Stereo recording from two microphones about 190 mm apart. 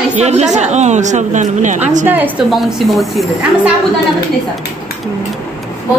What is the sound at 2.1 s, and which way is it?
A man's voice, 10° right (ahead or behind).